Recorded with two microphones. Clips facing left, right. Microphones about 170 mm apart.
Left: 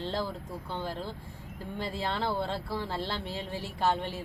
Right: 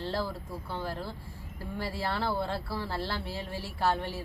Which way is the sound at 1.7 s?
20° left (ahead or behind).